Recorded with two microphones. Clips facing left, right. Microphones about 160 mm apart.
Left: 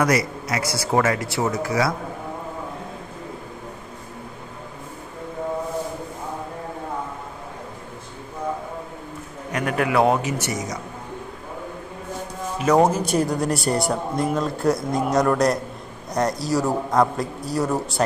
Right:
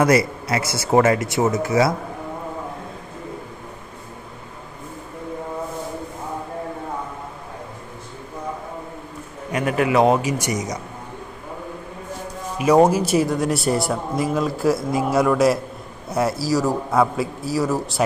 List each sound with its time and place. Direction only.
0.0 s a man's voice: 30° right (ahead or behind)
9.5 s speech: 10° right (ahead or behind)
10.2 s speech: 15° right (ahead or behind)
12.5 s speech: 10° right (ahead or behind)